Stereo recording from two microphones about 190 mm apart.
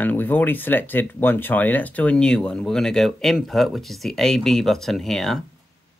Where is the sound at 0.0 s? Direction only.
10° left (ahead or behind).